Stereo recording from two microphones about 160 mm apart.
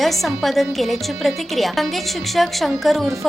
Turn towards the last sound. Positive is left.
turn(degrees=0)  # may be behind; listen again after turning